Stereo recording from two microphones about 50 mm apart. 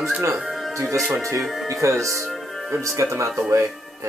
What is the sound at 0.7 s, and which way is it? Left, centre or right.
Speech, right.